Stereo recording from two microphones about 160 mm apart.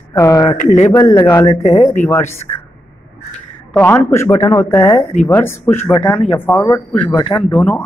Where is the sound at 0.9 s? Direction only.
25° left (ahead or behind).